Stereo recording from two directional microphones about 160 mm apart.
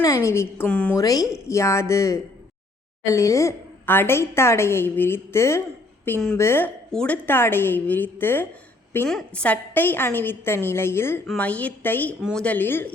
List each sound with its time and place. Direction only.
0.0 s a woman's voice: 20° left (ahead or behind)
0.9 s a woman's voice: 20° left (ahead or behind)